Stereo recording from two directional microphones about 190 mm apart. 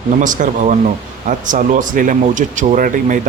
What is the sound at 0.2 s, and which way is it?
Speech, 40° right (ahead or behind).